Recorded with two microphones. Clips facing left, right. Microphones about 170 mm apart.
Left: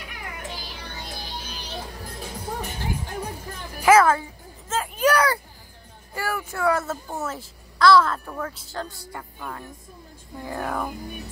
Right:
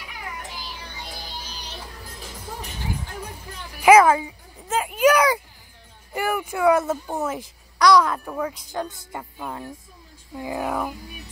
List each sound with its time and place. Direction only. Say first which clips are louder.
0.5 s music: left 1 dB; 65° left (ahead or behind); by 3.8 s 45° left (ahead or behind)
3.8 s a sound: right 3 dB; 15° right (ahead or behind)
6.1 s a child's voice: right 4 dB; 20° right (ahead or behind)
10.4 s a child's voice: right 2 dB; 10° right (ahead or behind)